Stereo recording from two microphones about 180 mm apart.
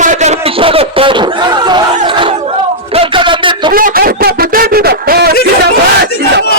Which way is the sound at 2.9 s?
30° right (ahead or behind).